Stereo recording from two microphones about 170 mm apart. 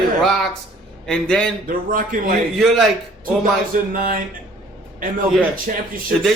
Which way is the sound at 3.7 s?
55° right (ahead or behind).